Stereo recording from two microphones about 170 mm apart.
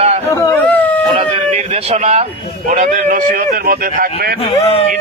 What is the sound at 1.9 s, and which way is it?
A man's voice, 40° right (ahead or behind).